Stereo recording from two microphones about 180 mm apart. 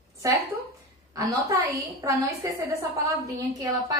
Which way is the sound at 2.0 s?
15° right (ahead or behind).